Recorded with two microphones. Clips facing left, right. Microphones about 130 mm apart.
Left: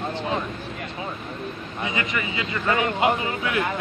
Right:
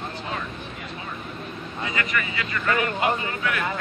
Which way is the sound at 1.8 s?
20° left (ahead or behind).